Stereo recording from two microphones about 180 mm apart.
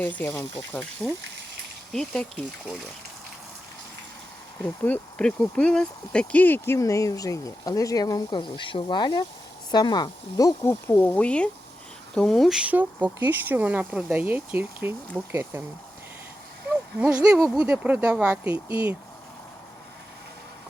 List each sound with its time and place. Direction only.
0.0 s speech: 10° left (ahead or behind)
4.6 s speech: 10° left (ahead or behind); by 15.6 s 15° right (ahead or behind)
17.7 s speech: 5° right (ahead or behind)
18.4 s speech: 30° left (ahead or behind)